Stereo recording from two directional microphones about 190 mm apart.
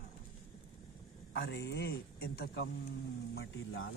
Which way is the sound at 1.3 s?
65° left (ahead or behind).